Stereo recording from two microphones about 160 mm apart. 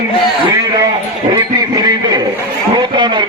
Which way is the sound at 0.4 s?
25° right (ahead or behind).